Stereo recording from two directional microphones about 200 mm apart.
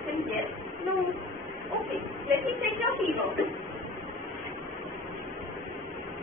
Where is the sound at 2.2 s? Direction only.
Centre (ahead or behind).